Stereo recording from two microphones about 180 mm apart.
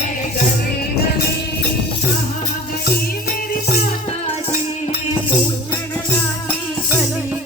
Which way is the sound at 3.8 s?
40° left (ahead or behind).